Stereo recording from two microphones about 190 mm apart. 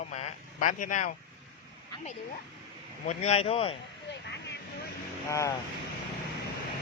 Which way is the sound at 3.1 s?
35° left (ahead or behind).